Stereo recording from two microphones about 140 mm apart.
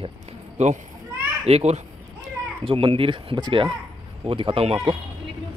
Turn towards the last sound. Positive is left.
turn(degrees=-40)  # may be behind; listen again after turning